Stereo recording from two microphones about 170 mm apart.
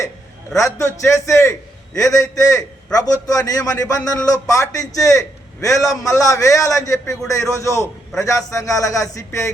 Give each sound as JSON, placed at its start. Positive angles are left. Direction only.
{"t": 0.5, "sound": "a man's voice", "side_deg": 15}